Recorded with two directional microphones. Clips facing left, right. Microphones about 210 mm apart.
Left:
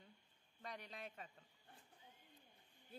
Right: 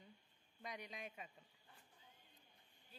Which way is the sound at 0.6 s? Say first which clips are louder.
Right 1 dB; 10° right (ahead or behind).